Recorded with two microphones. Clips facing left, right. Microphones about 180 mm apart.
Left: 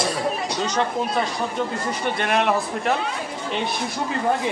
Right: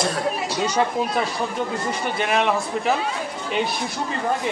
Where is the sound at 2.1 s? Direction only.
Centre (ahead or behind).